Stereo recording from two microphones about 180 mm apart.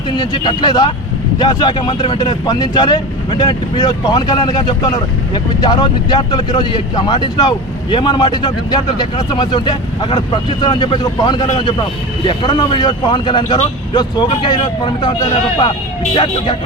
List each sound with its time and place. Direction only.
0.2 s speech: 25° left (ahead or behind)